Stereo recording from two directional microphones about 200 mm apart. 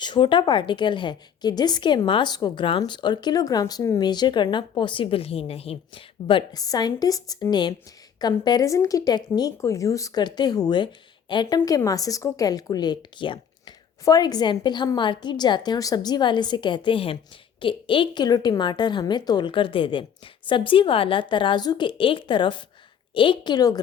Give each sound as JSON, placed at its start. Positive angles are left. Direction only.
{"t": 0.0, "sound": "a woman's voice", "side_deg": 25}